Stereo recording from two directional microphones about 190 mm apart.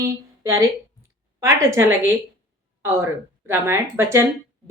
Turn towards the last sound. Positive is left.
turn(degrees=-15)  # may be behind; listen again after turning